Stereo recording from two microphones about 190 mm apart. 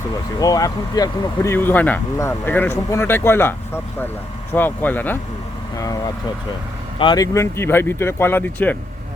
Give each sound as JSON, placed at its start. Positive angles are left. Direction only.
{"t": 0.3, "sound": "speech", "side_deg": 20}
{"t": 7.0, "sound": "speech", "side_deg": 20}